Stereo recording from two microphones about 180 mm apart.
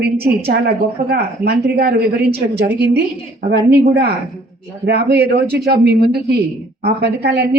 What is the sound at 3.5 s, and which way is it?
A woman's voice, 60° right (ahead or behind).